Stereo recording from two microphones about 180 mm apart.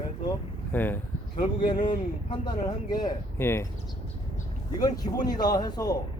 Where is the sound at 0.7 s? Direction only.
10° left (ahead or behind).